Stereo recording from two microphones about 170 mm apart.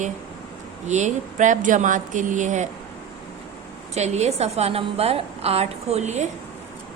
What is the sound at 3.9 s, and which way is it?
A woman's voice, 40° right (ahead or behind).